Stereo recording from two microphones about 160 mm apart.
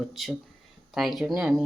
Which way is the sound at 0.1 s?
Centre (ahead or behind).